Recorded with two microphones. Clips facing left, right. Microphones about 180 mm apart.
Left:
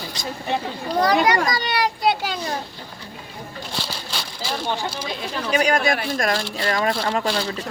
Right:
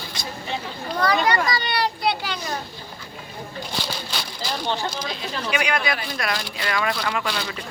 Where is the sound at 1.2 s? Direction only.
40° left (ahead or behind).